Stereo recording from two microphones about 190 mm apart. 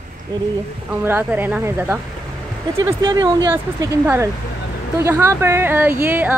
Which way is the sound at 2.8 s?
20° right (ahead or behind).